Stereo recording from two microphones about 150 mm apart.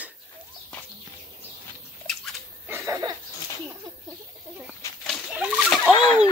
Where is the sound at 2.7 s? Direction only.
20° right (ahead or behind).